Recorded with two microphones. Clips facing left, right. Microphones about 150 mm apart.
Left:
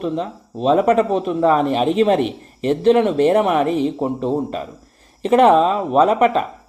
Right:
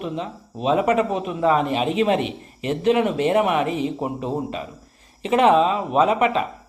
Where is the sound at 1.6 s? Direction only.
45° left (ahead or behind).